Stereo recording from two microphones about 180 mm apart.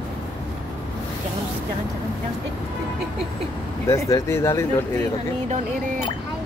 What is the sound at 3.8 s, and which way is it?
Speech, 20° left (ahead or behind).